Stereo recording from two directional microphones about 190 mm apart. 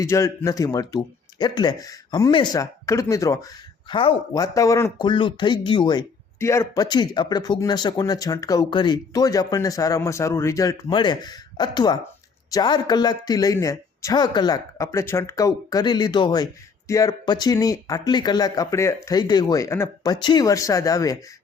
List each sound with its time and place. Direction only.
0.0 s speech: 15° left (ahead or behind)